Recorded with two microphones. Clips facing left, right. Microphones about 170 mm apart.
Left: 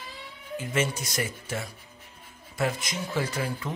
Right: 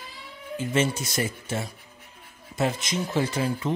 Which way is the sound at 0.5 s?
25° right (ahead or behind).